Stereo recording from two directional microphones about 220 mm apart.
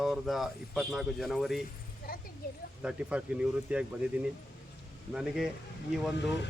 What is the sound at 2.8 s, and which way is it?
Speech, 5° right (ahead or behind).